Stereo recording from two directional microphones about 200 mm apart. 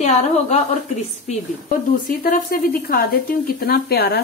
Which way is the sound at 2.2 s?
50° left (ahead or behind).